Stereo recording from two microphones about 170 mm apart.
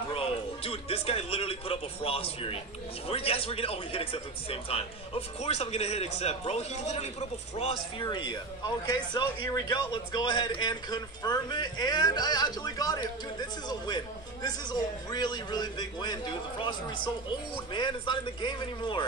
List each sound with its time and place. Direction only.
0.1 s a man's voice: 35° left (ahead or behind)